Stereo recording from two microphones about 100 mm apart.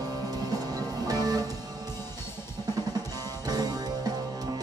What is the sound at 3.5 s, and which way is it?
Music, 40° right (ahead or behind).